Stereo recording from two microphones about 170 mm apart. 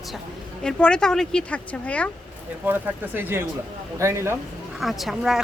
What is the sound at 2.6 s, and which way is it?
Speech, 10° right (ahead or behind).